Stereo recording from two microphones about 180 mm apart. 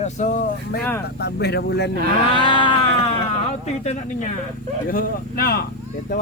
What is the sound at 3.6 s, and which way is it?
Speech, 40° left (ahead or behind).